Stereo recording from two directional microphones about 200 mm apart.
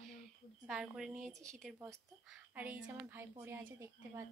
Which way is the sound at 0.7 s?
Centre (ahead or behind).